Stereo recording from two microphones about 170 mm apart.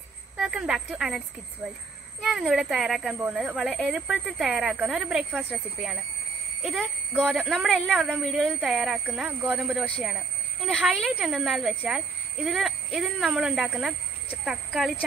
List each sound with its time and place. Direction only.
0.4 s speech: 5° right (ahead or behind)
2.2 s speech: centre (ahead or behind)